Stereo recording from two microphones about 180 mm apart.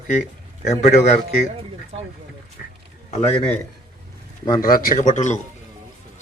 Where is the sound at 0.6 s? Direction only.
40° left (ahead or behind).